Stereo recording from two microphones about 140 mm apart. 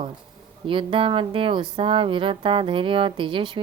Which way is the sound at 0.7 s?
40° right (ahead or behind).